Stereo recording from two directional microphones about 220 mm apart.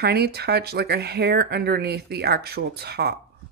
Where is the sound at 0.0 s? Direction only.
45° right (ahead or behind).